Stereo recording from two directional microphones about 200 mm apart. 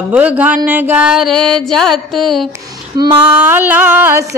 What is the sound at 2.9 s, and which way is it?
Female singing, 10° right (ahead or behind).